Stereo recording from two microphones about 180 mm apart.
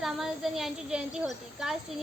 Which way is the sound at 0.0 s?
Centre (ahead or behind).